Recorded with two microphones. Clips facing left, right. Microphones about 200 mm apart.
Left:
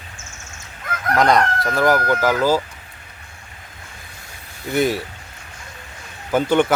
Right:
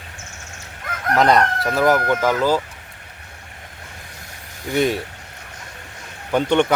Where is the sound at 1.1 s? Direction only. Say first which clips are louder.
Even; centre (ahead or behind).